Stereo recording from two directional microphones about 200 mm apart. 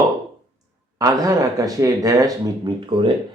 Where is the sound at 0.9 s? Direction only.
15° right (ahead or behind).